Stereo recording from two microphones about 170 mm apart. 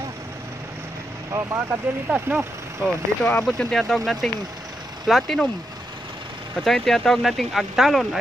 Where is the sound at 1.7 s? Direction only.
10° right (ahead or behind).